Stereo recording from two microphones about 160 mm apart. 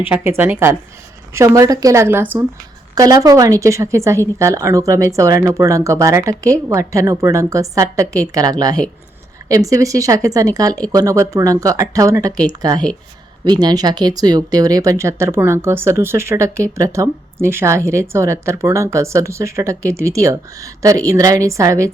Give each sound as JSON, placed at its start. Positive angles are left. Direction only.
{"t": 0.0, "sound": "speech", "side_deg": -15}